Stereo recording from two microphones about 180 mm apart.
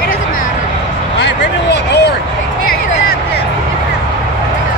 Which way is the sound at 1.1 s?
75° left (ahead or behind).